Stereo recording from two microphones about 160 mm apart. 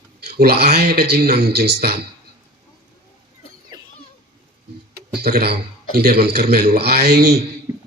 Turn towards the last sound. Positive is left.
turn(degrees=-15)  # may be behind; listen again after turning